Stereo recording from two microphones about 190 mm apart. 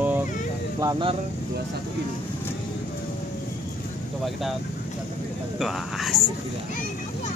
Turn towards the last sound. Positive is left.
turn(degrees=0)  # may be behind; listen again after turning